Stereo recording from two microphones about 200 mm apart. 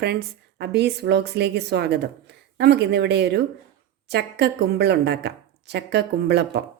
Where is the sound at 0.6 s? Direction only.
55° right (ahead or behind).